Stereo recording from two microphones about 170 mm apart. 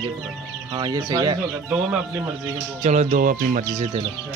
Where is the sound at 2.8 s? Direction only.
45° right (ahead or behind).